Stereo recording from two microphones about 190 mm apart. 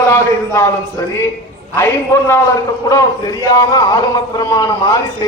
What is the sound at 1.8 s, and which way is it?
A man's voice, 15° left (ahead or behind).